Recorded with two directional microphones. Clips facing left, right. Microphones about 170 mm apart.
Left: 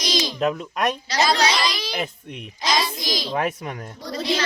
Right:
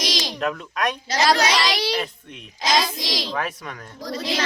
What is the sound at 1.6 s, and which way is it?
Child singing, 75° right (ahead or behind).